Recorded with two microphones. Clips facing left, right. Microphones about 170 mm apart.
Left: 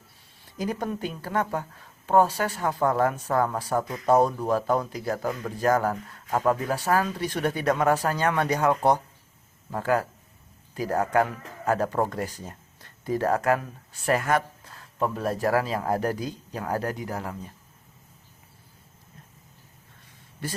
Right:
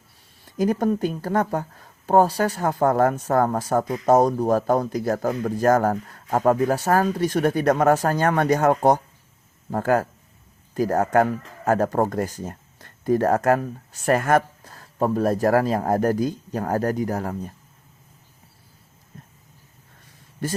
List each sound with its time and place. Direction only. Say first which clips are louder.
0.6 s speech: right 8 dB; 45° right (ahead or behind)
20.4 s speech: right 7 dB; 45° right (ahead or behind)